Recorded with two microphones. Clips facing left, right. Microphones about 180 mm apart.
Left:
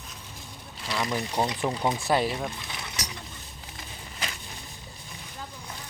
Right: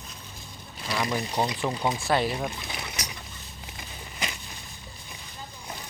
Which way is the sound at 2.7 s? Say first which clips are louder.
Right 1 dB; 25° right (ahead or behind).